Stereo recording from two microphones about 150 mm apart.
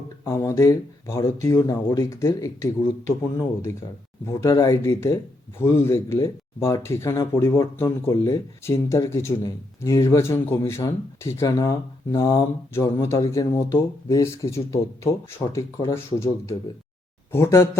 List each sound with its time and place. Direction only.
0.3 s speech: 20° left (ahead or behind)